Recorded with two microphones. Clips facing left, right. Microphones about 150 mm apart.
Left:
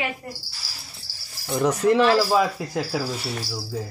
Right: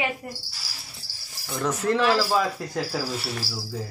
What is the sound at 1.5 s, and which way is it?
Speech, 15° left (ahead or behind).